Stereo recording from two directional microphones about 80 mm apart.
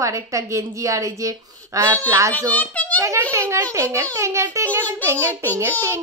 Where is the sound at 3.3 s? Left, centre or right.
Right.